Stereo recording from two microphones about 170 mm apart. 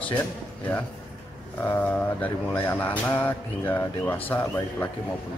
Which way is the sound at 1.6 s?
10° left (ahead or behind).